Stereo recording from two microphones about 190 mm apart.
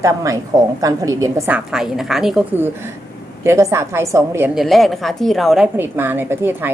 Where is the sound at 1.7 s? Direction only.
5° right (ahead or behind).